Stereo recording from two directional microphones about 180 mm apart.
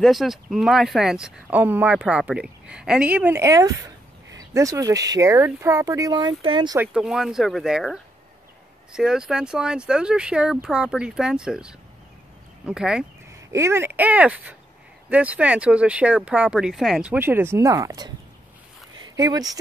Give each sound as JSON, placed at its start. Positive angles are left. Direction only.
{"t": 0.0, "sound": "speech", "side_deg": 0}
{"t": 6.8, "sound": "speech", "side_deg": -5}
{"t": 13.3, "sound": "speech", "side_deg": -15}
{"t": 18.9, "sound": "a sound", "side_deg": -20}